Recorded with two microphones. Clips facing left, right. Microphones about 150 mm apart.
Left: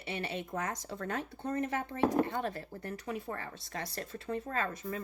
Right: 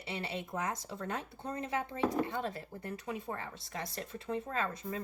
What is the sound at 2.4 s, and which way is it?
Speech, 25° right (ahead or behind).